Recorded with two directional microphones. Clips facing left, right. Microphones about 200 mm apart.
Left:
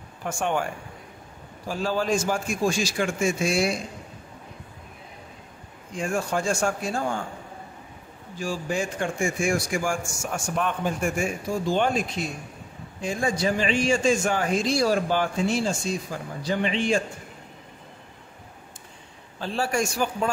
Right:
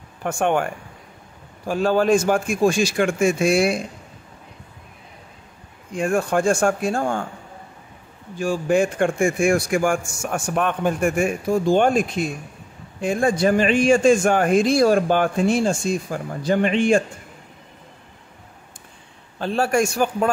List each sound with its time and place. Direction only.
0.2 s a man's voice: 60° right (ahead or behind)
1.7 s a man's voice: 60° right (ahead or behind)
5.9 s a man's voice: 55° right (ahead or behind)
8.4 s a man's voice: 55° right (ahead or behind)
19.4 s a man's voice: 55° right (ahead or behind)